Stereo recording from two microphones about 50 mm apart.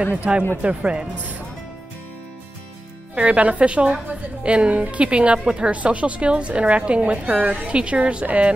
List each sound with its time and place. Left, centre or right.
0.0 s speech: right
0.6 s a woman's voice: right
3.2 s a woman's voice: right